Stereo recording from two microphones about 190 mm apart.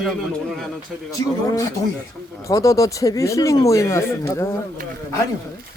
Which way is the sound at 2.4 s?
15° left (ahead or behind).